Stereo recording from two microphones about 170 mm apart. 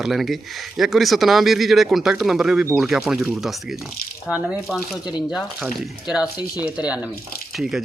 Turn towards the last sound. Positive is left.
turn(degrees=0)  # may be behind; listen again after turning